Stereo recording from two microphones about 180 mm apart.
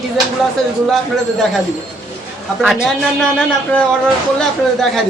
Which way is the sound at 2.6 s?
Centre (ahead or behind).